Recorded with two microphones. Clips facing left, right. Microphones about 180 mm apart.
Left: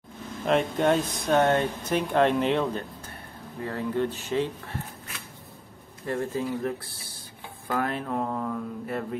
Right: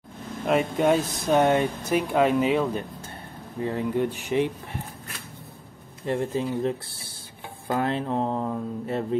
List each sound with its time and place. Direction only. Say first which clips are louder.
0.5 s speech: right 1 dB; 5° right (ahead or behind)
3.6 s speech: right 2 dB; 15° right (ahead or behind)
6.0 s speech: right 3 dB; 20° right (ahead or behind)